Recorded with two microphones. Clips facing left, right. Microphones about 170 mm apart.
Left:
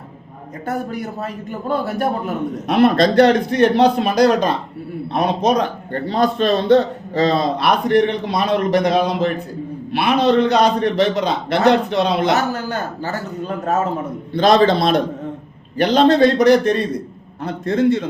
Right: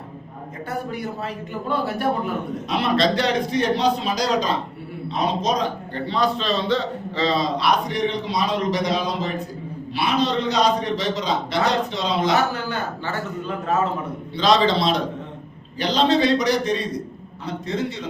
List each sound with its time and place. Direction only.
1.2 s a man's voice: 45° left (ahead or behind)
6.1 s a man's voice: 50° left (ahead or behind)
12.5 s a man's voice: 45° left (ahead or behind)
14.3 s a man's voice: 50° left (ahead or behind)